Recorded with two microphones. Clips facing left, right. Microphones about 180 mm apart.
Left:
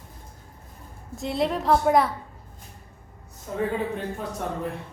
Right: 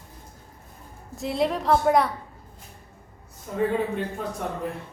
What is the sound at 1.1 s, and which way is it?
A woman's voice, centre (ahead or behind).